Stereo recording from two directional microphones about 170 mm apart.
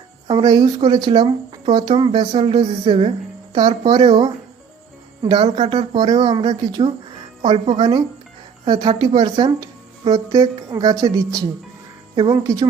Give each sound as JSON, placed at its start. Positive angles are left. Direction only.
{"t": 0.3, "sound": "speech", "side_deg": -25}